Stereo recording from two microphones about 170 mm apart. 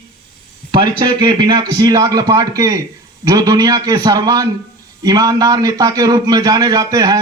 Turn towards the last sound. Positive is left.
turn(degrees=-20)  # may be behind; listen again after turning